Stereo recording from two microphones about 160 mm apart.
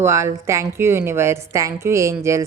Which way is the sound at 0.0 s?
20° right (ahead or behind).